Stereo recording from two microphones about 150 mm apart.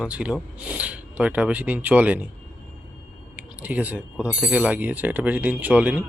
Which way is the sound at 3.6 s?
10° right (ahead or behind).